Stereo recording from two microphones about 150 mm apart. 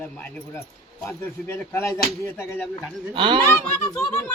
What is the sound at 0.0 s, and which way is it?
Speech, 10° left (ahead or behind).